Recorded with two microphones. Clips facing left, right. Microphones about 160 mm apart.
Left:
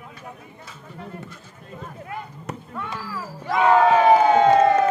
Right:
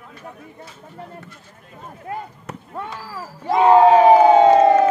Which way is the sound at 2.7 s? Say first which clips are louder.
Right 2 dB; 30° right (ahead or behind).